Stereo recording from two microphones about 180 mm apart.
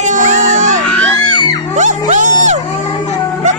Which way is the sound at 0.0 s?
45° right (ahead or behind).